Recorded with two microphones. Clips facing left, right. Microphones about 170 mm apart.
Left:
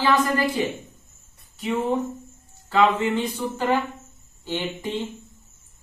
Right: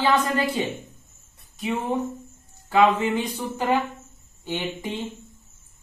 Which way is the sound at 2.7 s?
15° right (ahead or behind).